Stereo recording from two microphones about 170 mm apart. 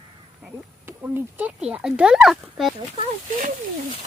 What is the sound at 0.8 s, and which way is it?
Speech, 15° right (ahead or behind).